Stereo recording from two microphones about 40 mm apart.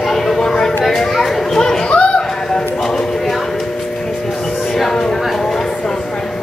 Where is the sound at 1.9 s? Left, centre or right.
Left.